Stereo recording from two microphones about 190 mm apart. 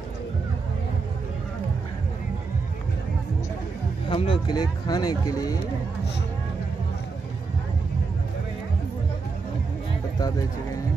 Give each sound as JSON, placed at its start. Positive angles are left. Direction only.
{"t": 4.1, "sound": "speech", "side_deg": 25}